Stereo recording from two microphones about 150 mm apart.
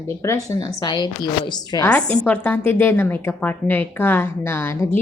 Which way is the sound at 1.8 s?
10° left (ahead or behind).